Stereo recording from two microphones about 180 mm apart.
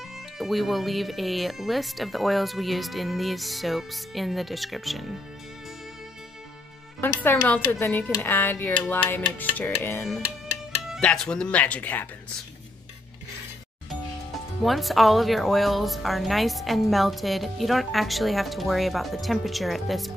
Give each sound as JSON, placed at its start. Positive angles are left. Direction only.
{"t": 0.4, "sound": "speech", "side_deg": 0}
{"t": 7.0, "sound": "speech", "side_deg": 10}
{"t": 14.6, "sound": "speech", "side_deg": 0}